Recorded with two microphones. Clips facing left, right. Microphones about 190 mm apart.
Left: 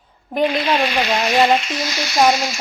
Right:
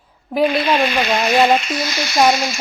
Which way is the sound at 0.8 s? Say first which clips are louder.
Right 1 dB; 50° right (ahead or behind).